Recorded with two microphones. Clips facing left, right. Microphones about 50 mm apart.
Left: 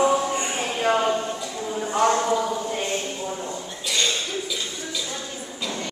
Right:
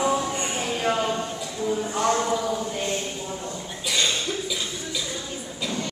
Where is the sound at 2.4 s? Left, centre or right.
Centre.